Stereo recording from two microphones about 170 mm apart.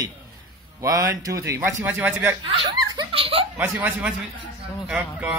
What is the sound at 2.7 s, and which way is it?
Giggle, 30° right (ahead or behind).